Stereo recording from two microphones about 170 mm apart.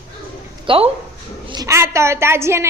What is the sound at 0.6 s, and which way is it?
Speech, 30° right (ahead or behind).